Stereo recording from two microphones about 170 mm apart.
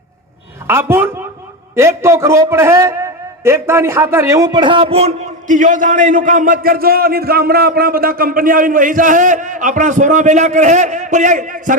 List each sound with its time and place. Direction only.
0.7 s a man's voice: 15° right (ahead or behind); by 11.8 s 50° right (ahead or behind)